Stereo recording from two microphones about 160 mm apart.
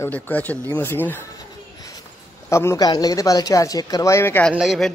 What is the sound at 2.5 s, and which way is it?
Speech, 15° left (ahead or behind).